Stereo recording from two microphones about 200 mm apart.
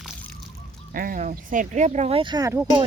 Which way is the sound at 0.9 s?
45° right (ahead or behind).